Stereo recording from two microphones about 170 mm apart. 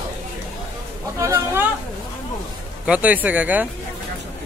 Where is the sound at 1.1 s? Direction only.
15° right (ahead or behind).